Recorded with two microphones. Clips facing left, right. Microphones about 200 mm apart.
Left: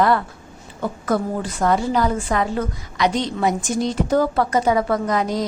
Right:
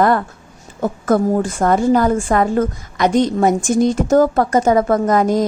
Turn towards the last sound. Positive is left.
turn(degrees=-50)  # may be behind; listen again after turning